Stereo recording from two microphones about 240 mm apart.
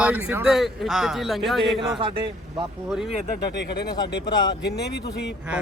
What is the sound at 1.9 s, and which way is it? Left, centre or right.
Speech, right.